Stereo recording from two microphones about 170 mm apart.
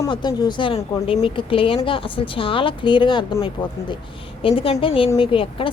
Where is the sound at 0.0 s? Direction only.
25° left (ahead or behind).